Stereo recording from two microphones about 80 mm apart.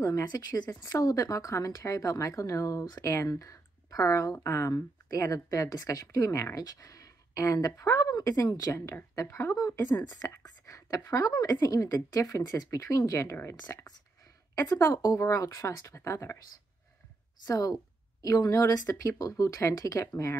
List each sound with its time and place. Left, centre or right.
0.0 s speech: left
0.8 s speech: left
4.7 s speech: left
8.7 s speech: left
9.6 s speech: left
10.4 s a sound: left
11.5 s speech: left
14.5 s speech: left
17.5 s speech: left